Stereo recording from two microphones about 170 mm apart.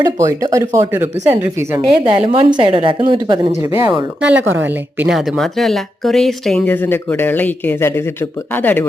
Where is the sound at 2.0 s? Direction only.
30° right (ahead or behind).